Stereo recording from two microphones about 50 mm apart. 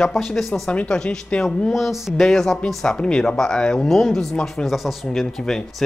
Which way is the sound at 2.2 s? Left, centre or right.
Centre.